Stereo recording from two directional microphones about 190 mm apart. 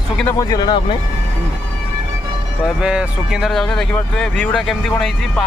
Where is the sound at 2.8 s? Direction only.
5° right (ahead or behind).